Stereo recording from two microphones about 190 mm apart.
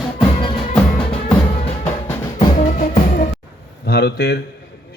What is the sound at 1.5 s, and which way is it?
Music, 35° left (ahead or behind).